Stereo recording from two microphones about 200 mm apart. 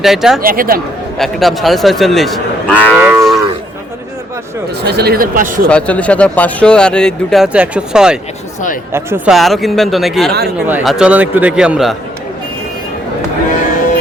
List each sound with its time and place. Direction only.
0.0 s speech: centre (ahead or behind)
0.4 s speech: 45° right (ahead or behind)
1.2 s speech: centre (ahead or behind)
4.8 s speech: 55° right (ahead or behind)
5.6 s speech: 5° left (ahead or behind)